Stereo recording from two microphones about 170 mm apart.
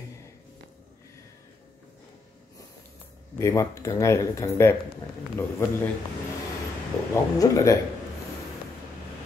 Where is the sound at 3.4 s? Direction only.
15° left (ahead or behind).